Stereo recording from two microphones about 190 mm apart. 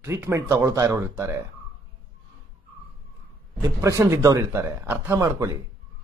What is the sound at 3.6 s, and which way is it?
Speech, 15° right (ahead or behind).